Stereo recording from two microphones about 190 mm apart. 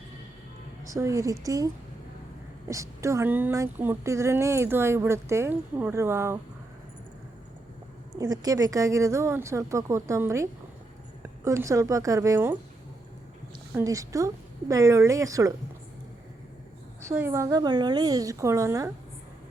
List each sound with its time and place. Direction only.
0.9 s speech: 15° right (ahead or behind)
8.2 s speech: 20° right (ahead or behind)
13.7 s speech: 15° right (ahead or behind)
17.1 s speech: 15° right (ahead or behind)